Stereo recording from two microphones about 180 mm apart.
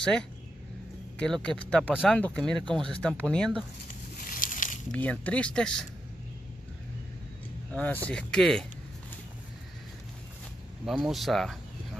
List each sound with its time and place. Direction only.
0.0 s speech: 5° left (ahead or behind)
2.1 s speech: 5° left (ahead or behind)
4.2 s a sound: 50° left (ahead or behind)
4.9 s speech: 10° left (ahead or behind)
7.7 s speech: 10° left (ahead or behind)
10.9 s speech: centre (ahead or behind)